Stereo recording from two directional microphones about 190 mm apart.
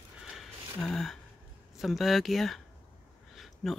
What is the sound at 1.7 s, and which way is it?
Speech, centre (ahead or behind).